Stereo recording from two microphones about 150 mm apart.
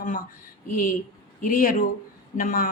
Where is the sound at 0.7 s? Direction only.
70° left (ahead or behind).